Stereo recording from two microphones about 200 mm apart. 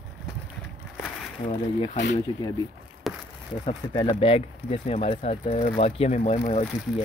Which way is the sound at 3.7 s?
25° left (ahead or behind).